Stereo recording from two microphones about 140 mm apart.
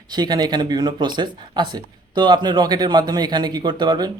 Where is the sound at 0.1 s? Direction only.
30° right (ahead or behind).